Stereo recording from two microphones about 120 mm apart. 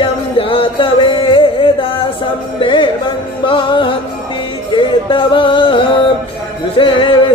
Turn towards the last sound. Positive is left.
turn(degrees=45)  # may be behind; listen again after turning